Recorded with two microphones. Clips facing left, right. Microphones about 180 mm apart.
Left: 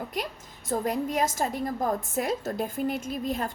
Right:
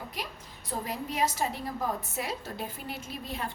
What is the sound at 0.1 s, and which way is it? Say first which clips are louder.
A woman's voice: left 6 dB; 50° left (ahead or behind).